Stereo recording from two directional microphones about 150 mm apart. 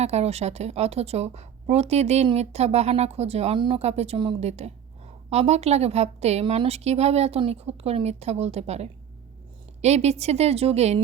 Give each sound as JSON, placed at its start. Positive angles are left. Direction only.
{"t": 0.0, "sound": "a woman's voice", "side_deg": -45}